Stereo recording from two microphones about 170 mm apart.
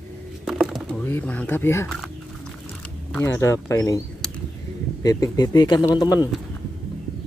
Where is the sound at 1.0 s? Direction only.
10° left (ahead or behind).